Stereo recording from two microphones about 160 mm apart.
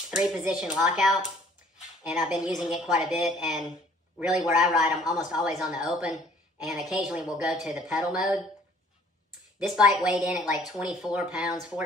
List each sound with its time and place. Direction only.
0.2 s speech: 5° right (ahead or behind)
5.0 s speech: 25° left (ahead or behind)
5.3 s speech: 5° right (ahead or behind)
9.6 s speech: 5° right (ahead or behind)